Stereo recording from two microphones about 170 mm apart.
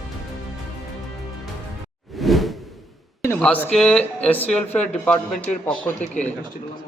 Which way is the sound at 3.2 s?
10° left (ahead or behind).